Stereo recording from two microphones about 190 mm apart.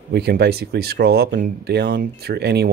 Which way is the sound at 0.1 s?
55° right (ahead or behind).